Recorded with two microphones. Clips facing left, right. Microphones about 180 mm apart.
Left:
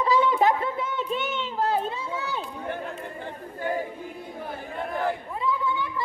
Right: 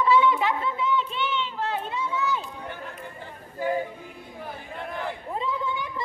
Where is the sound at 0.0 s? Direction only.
40° left (ahead or behind).